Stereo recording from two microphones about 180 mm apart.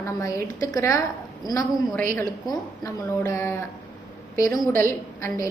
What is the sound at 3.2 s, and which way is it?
Speech, 15° left (ahead or behind).